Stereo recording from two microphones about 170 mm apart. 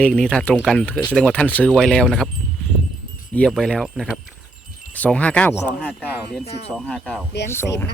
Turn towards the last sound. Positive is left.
turn(degrees=15)  # may be behind; listen again after turning